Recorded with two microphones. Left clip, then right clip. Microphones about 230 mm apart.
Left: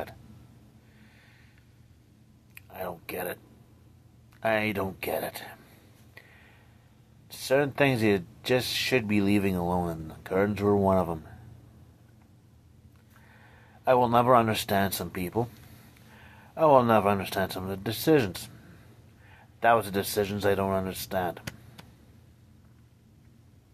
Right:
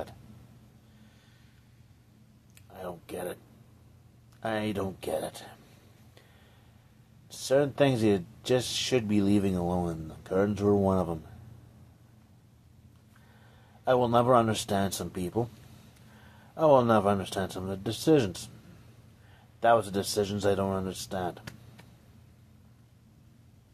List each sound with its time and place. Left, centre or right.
2.5 s a sound: centre
4.4 s speech: centre
7.2 s speech: centre
13.8 s speech: centre
16.5 s speech: centre
19.6 s speech: centre